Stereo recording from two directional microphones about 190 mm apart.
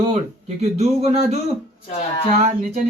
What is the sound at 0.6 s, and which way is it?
Speech, 35° right (ahead or behind).